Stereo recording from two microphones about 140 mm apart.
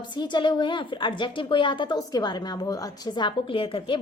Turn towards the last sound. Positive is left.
turn(degrees=40)  # may be behind; listen again after turning